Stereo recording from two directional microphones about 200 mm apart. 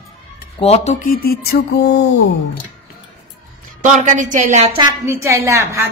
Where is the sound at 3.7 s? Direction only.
40° right (ahead or behind).